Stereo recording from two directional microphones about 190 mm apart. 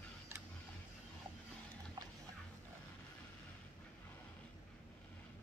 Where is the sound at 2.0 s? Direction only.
25° right (ahead or behind).